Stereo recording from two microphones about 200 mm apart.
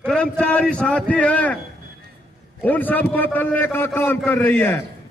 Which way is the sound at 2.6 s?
10° left (ahead or behind).